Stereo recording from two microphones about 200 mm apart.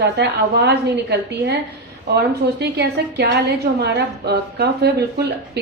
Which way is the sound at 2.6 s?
55° right (ahead or behind).